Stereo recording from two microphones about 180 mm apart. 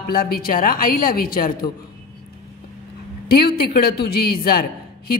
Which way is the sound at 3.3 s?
60° left (ahead or behind).